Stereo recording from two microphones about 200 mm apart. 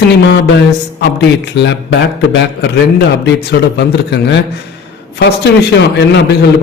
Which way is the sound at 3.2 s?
60° left (ahead or behind).